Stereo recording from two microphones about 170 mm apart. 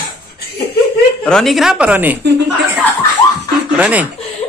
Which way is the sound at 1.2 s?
Centre (ahead or behind).